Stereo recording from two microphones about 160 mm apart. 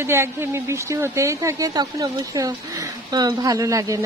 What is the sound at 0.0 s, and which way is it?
A woman's voice, 15° right (ahead or behind).